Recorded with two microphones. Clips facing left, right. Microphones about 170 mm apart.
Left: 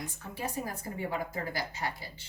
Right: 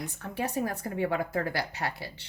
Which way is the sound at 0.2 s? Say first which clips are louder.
Right 7 dB; 65° right (ahead or behind).